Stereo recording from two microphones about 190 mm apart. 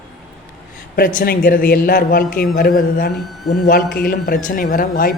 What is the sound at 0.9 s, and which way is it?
A man's voice, 50° left (ahead or behind).